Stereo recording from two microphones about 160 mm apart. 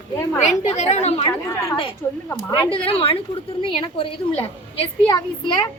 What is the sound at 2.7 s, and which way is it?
A woman's voice, 35° left (ahead or behind).